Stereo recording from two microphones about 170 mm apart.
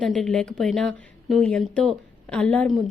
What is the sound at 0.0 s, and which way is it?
A woman's voice, centre (ahead or behind).